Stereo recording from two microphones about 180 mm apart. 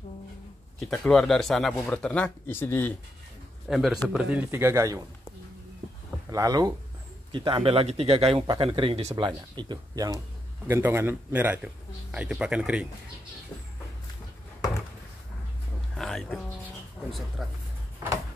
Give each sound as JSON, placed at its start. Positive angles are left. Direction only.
{"t": 0.7, "sound": "speech", "side_deg": 0}
{"t": 3.6, "sound": "a man's voice", "side_deg": 0}
{"t": 6.3, "sound": "a man's voice", "side_deg": -20}
{"t": 16.0, "sound": "speech", "side_deg": 0}
{"t": 17.4, "sound": "speech", "side_deg": 0}